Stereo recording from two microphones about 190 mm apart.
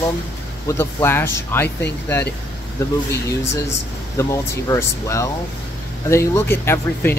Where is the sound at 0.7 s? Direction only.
15° left (ahead or behind).